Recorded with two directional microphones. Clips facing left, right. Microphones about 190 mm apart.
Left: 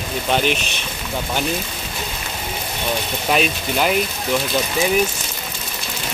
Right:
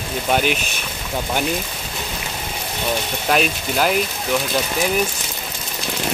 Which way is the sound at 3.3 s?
Centre (ahead or behind).